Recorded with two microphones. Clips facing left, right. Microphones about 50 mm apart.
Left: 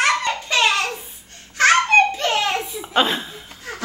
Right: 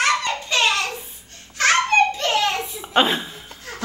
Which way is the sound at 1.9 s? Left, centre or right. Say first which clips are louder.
Left 2 dB; centre.